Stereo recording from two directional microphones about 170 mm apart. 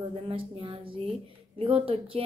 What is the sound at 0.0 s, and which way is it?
Speech, 30° right (ahead or behind).